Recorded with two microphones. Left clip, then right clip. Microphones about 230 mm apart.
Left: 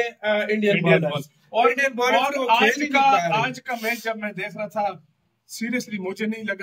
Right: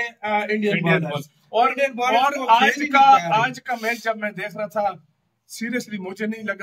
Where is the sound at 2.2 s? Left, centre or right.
Centre.